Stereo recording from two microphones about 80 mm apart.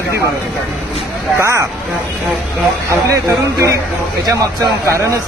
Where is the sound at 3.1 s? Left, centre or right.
Right.